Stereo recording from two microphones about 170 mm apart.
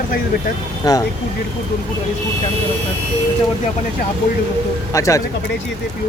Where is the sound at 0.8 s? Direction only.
20° left (ahead or behind).